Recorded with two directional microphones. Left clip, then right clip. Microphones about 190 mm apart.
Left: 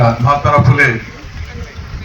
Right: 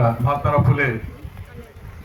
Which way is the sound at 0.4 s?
35° right (ahead or behind).